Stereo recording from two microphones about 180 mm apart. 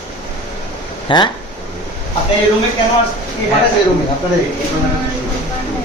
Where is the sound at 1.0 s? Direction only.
25° left (ahead or behind).